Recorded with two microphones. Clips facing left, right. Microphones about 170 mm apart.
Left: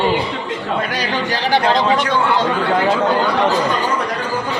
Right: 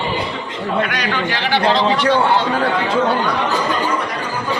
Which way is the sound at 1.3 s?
40° left (ahead or behind).